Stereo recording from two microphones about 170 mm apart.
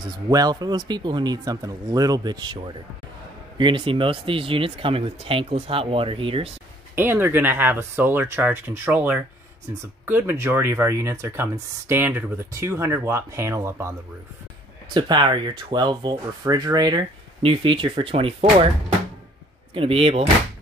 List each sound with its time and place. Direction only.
0.3 s speech: 25° right (ahead or behind)
7.0 s speech: 10° right (ahead or behind)
15.0 s speech: 25° right (ahead or behind)
19.7 s speech: 35° right (ahead or behind)